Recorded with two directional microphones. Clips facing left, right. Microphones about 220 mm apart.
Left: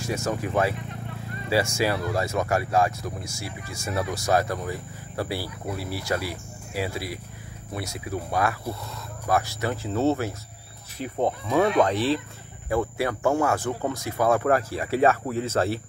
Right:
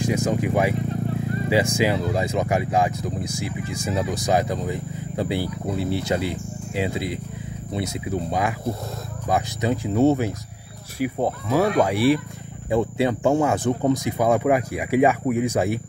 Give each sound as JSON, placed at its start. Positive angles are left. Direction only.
{"t": 0.0, "sound": "speech", "side_deg": -15}